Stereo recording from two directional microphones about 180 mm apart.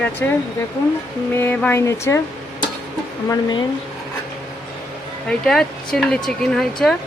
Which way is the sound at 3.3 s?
25° left (ahead or behind).